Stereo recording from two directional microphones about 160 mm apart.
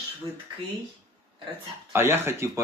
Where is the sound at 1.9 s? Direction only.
15° right (ahead or behind).